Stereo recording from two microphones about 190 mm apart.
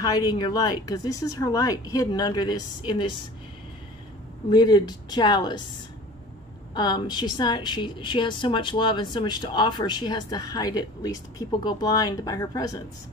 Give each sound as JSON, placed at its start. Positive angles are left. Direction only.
{"t": 0.0, "sound": "a woman's voice", "side_deg": 20}
{"t": 4.5, "sound": "a woman's voice", "side_deg": 20}
{"t": 6.7, "sound": "a woman's voice", "side_deg": 20}